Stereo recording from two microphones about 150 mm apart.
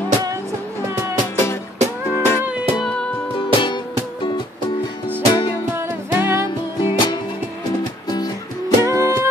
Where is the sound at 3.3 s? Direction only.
35° left (ahead or behind).